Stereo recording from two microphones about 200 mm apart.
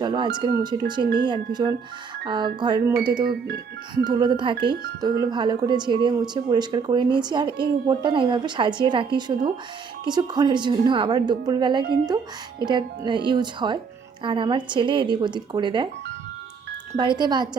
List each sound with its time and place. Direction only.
0.0 s speech: 20° right (ahead or behind)
3.2 s speech: 50° right (ahead or behind)
4.0 s speech: 20° right (ahead or behind)
11.8 s speech: 50° right (ahead or behind)
12.0 s speech: 20° right (ahead or behind)
17.0 s speech: 20° right (ahead or behind)